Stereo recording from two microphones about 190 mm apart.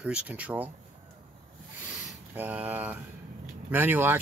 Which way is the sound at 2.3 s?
10° right (ahead or behind).